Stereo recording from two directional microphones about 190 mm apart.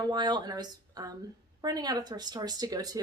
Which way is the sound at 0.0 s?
20° right (ahead or behind).